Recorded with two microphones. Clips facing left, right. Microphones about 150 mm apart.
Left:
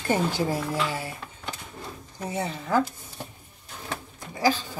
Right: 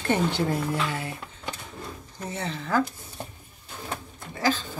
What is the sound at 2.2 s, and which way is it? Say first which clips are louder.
Speech: left 2 dB; 15° left (ahead or behind).